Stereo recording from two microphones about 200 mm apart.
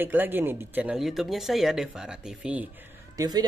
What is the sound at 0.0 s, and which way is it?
Speech, 10° right (ahead or behind).